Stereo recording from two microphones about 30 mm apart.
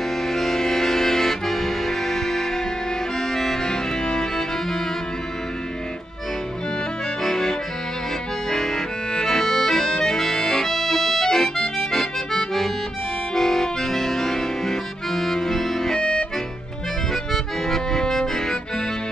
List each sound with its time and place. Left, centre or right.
0.3 s accordion: centre
7.2 s accordion: centre
10.7 s accordion: centre
16.0 s music: left
17.1 s accordion: centre